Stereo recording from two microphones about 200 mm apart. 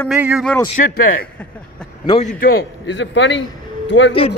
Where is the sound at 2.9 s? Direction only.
65° left (ahead or behind).